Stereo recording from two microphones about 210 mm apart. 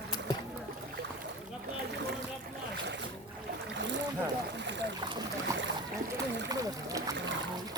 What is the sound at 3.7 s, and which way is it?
Boat, 60° right (ahead or behind).